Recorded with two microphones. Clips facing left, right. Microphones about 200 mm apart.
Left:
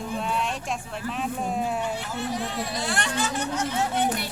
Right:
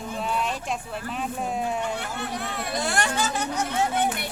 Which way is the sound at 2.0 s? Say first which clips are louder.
Left 2 dB; 55° right (ahead or behind).